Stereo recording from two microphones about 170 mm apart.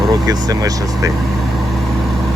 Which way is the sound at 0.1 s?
20° right (ahead or behind).